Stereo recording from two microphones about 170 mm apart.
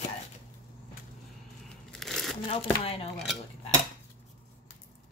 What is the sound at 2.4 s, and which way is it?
Speech, 35° left (ahead or behind).